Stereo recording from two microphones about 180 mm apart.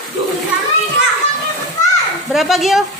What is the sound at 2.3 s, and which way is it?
Speech, centre (ahead or behind).